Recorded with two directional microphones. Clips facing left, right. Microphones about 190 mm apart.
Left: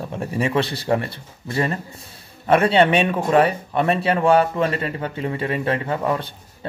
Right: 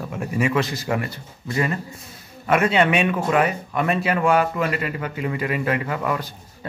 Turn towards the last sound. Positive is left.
turn(degrees=30)  # may be behind; listen again after turning